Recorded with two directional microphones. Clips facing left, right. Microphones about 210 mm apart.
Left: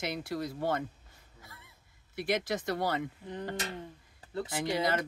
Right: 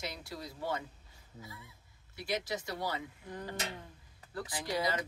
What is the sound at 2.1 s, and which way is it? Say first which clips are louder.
Speech: left 5 dB; 55° left (ahead or behind).